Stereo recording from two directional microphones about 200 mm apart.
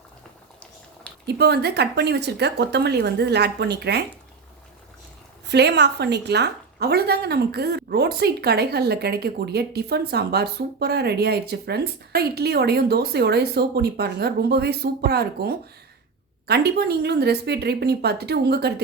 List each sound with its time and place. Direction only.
1.1 s a sound: 5° left (ahead or behind)
1.4 s speech: 55° right (ahead or behind)
5.5 s a woman's voice: 55° right (ahead or behind)